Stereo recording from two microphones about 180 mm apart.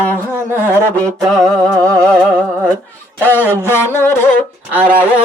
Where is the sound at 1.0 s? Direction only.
20° right (ahead or behind).